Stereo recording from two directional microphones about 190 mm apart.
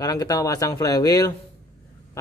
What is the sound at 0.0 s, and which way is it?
Speech, 20° left (ahead or behind).